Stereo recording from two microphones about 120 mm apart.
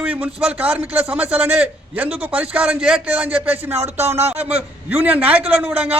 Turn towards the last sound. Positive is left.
turn(degrees=-15)  # may be behind; listen again after turning